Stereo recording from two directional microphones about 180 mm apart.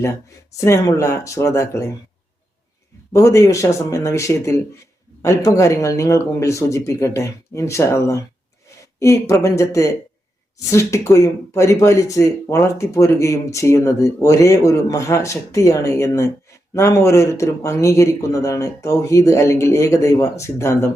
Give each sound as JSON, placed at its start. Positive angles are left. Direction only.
{"t": 0.6, "sound": "speech", "side_deg": 20}
{"t": 3.1, "sound": "speech", "side_deg": 15}
{"t": 8.8, "sound": "a sound", "side_deg": 15}
{"t": 9.4, "sound": "speech", "side_deg": 15}